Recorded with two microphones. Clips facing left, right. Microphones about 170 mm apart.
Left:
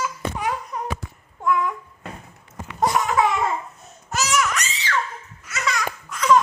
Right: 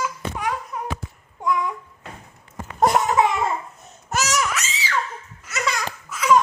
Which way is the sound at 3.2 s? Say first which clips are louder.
Even; 20° right (ahead or behind).